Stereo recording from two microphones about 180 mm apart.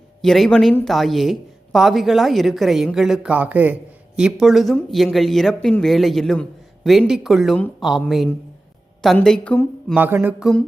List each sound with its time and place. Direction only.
0.2 s speech: centre (ahead or behind)
9.9 s mantra: 10° right (ahead or behind)